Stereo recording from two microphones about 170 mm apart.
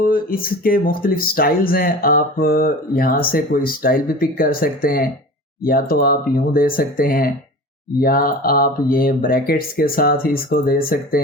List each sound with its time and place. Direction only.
0.0 s speech: 55° left (ahead or behind)